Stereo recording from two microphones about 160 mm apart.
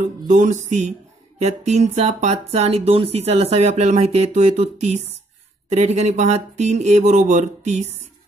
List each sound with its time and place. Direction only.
0.3 s speech: 50° right (ahead or behind)